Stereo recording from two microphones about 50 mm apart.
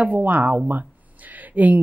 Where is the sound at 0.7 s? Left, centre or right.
Right.